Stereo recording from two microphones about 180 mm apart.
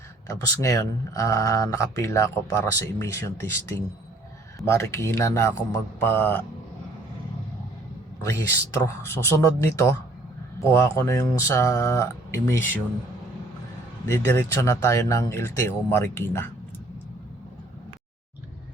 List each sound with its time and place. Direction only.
0.3 s speech: 15° left (ahead or behind)
8.8 s speech: 15° left (ahead or behind)
14.1 s speech: 15° left (ahead or behind)